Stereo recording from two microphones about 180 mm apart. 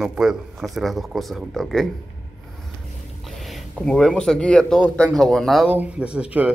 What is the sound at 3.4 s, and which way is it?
Speech, centre (ahead or behind).